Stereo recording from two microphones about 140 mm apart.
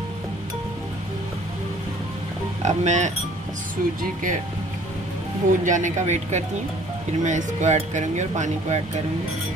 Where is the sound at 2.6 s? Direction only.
55° right (ahead or behind).